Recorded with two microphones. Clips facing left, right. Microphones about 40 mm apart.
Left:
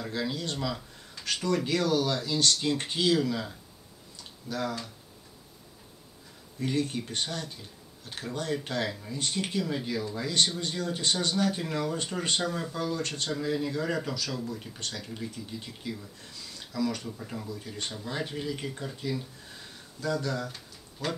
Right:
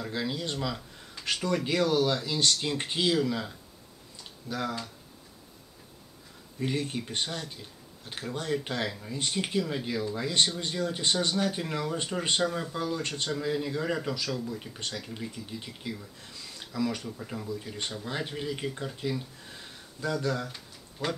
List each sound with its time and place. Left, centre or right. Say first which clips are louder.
0.0 s speech: even; centre
1.2 s speech: even; right
3.1 s speech: left 2 dB; centre
6.6 s speech: left 1 dB; right
8.6 s speech: left 1 dB; centre
11.3 s speech: left 1 dB; centre
13.3 s speech: even; centre; by 21.2 s right